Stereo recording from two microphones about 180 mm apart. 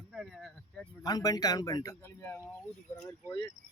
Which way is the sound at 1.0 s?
20° left (ahead or behind).